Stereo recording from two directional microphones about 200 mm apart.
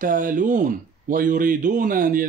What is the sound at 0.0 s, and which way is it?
Speech, 40° right (ahead or behind).